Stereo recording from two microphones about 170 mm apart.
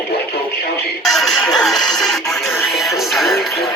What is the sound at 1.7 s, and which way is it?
Speech, 25° left (ahead or behind).